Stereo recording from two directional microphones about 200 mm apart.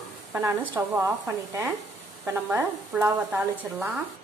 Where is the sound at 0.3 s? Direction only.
10° right (ahead or behind).